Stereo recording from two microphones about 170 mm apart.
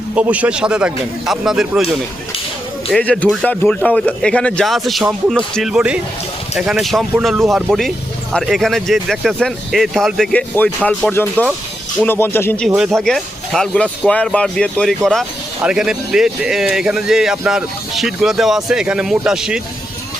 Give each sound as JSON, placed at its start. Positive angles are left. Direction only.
{"t": 0.1, "sound": "speech", "side_deg": -10}
{"t": 12.6, "sound": "speech", "side_deg": 0}